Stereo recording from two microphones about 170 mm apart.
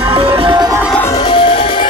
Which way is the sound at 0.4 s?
25° right (ahead or behind).